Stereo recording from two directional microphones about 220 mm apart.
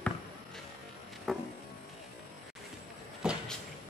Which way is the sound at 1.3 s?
Centre (ahead or behind).